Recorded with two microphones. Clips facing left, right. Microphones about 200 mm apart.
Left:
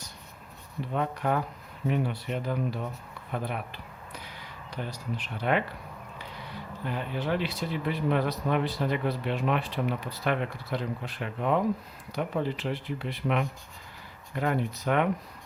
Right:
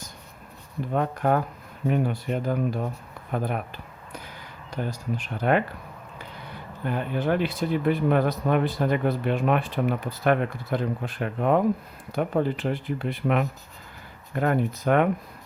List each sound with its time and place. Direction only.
0.9 s speech: 50° right (ahead or behind)
6.8 s speech: 50° right (ahead or behind)